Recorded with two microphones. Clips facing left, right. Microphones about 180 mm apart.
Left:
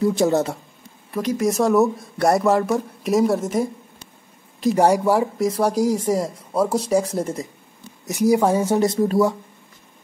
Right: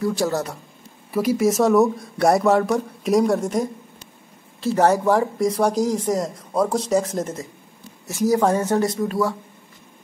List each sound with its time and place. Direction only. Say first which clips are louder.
0.0 s speech: left 4 dB; 20° left (ahead or behind)
1.1 s speech: right 2 dB; 5° right (ahead or behind)
4.6 s speech: left 1 dB; 15° left (ahead or behind)
8.8 s speech: left 4 dB; 30° left (ahead or behind)